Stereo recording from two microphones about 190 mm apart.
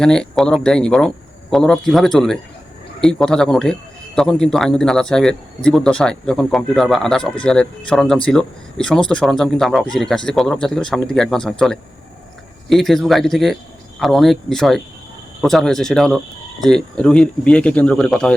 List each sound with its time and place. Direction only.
0.0 s a man's voice: 5° left (ahead or behind)